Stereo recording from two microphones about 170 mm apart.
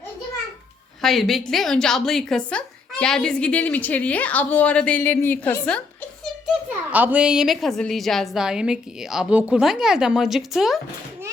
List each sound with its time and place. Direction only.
1.0 s a woman's voice: centre (ahead or behind)
6.9 s a woman's voice: 10° right (ahead or behind)